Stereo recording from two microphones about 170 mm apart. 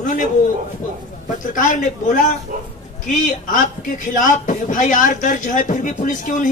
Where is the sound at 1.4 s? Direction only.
50° left (ahead or behind).